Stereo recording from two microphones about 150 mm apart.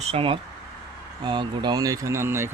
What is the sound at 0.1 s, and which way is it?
Speech, 35° right (ahead or behind).